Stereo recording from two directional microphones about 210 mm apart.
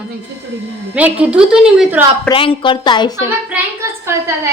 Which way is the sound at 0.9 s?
5° right (ahead or behind).